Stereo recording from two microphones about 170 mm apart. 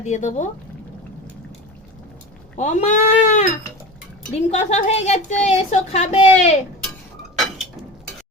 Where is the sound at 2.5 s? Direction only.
45° left (ahead or behind).